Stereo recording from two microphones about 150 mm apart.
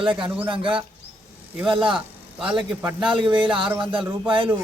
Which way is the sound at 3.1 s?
35° right (ahead or behind).